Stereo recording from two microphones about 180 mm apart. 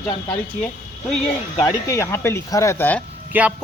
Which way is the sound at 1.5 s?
20° left (ahead or behind).